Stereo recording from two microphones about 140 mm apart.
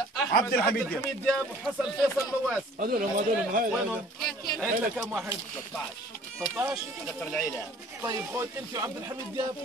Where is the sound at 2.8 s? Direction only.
85° right.